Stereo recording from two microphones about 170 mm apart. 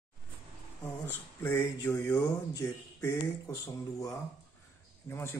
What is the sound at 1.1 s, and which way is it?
Speech, 15° left (ahead or behind).